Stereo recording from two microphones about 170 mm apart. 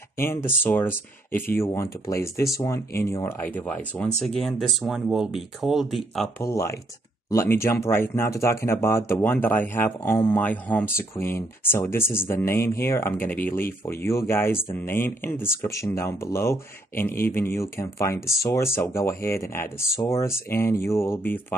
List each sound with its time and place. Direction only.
0.2 s speech: 15° left (ahead or behind)
6.4 s speech: 15° left (ahead or behind)